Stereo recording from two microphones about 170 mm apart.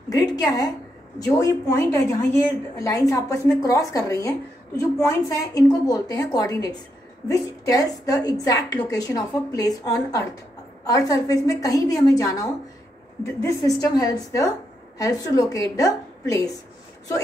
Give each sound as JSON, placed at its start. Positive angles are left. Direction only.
{"t": 0.1, "sound": "speech", "side_deg": 20}